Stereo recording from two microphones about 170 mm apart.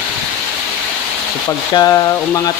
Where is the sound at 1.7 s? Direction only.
20° left (ahead or behind).